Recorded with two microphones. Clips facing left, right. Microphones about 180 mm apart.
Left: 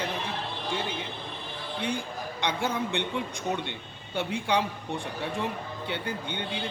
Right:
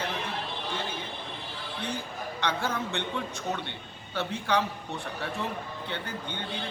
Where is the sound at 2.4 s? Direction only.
15° left (ahead or behind).